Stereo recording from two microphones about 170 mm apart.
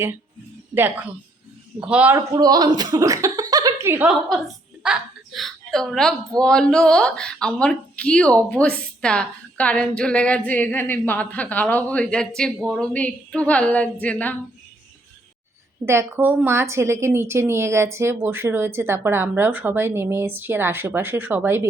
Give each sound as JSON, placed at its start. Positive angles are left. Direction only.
{"t": 0.7, "sound": "a woman's voice", "side_deg": -10}
{"t": 2.3, "sound": "a woman's voice", "side_deg": -25}
{"t": 15.9, "sound": "a woman's voice", "side_deg": -15}